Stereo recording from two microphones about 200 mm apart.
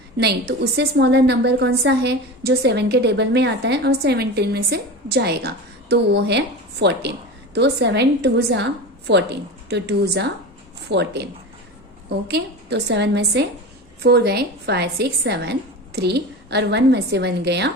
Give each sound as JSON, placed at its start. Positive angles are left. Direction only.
{"t": 0.2, "sound": "a woman's voice", "side_deg": -55}
{"t": 12.3, "sound": "a woman's voice", "side_deg": -55}